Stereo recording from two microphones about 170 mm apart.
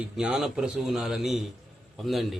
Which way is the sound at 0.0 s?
5° right (ahead or behind).